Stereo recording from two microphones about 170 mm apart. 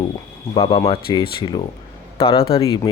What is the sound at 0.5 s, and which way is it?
Speech, 35° left (ahead or behind).